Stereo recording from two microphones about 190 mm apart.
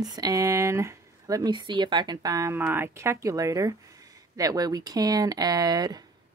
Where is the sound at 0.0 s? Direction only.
20° right (ahead or behind).